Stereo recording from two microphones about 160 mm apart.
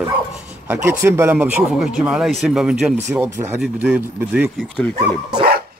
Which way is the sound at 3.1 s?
15° right (ahead or behind).